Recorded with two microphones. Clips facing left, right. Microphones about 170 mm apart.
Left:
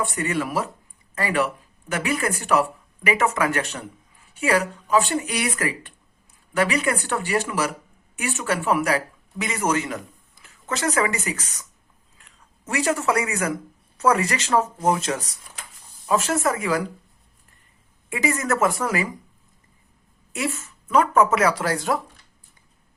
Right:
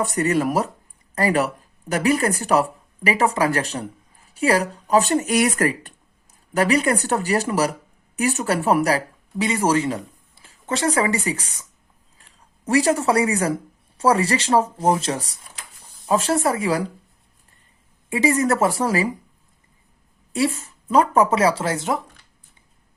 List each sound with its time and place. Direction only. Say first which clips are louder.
0.0 s speech: right 5 dB; 40° right (ahead or behind)
18.1 s speech: right 5 dB; 35° right (ahead or behind)
20.3 s speech: right 6 dB; 35° right (ahead or behind)